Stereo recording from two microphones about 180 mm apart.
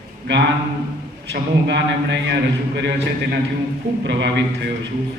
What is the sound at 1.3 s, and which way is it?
Speech, 75° right (ahead or behind).